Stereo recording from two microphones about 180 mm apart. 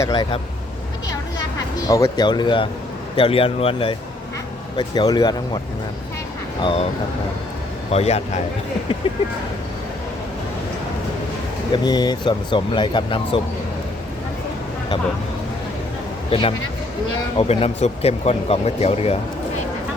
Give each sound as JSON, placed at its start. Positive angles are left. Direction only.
{"t": 0.0, "sound": "speech", "side_deg": 25}
{"t": 1.9, "sound": "speech", "side_deg": 20}
{"t": 6.6, "sound": "speech", "side_deg": 30}
{"t": 7.9, "sound": "speech", "side_deg": 35}
{"t": 11.7, "sound": "speech", "side_deg": 25}
{"t": 16.3, "sound": "speech", "side_deg": 30}